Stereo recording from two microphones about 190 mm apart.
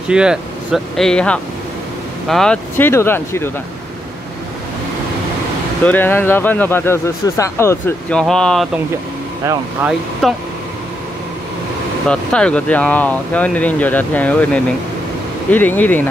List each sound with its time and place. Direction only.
0.1 s speech: 5° right (ahead or behind); by 3.5 s 15° left (ahead or behind)
5.9 s speech: 10° left (ahead or behind)
9.4 s speech: 15° right (ahead or behind)
10.2 s speech: centre (ahead or behind)
12.1 s speech: 5° left (ahead or behind)